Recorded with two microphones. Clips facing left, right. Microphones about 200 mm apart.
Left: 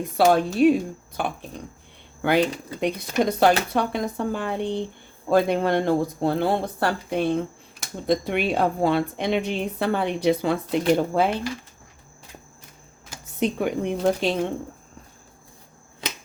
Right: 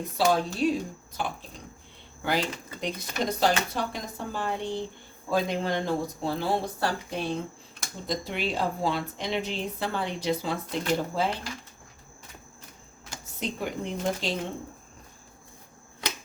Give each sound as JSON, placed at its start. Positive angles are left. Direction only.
{"t": 0.3, "sound": "a woman's voice", "side_deg": 60}
{"t": 13.4, "sound": "a woman's voice", "side_deg": 60}
{"t": 16.0, "sound": "typewriter", "side_deg": 25}